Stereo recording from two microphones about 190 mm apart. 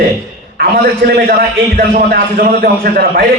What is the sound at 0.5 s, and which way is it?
A man's voice, 55° right (ahead or behind).